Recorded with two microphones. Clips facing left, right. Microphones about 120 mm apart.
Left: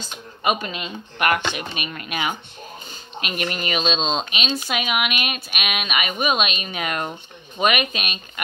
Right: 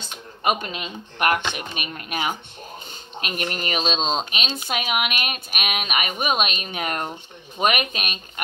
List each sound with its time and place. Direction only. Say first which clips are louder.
0.0 s speech: even; 55° right (ahead or behind)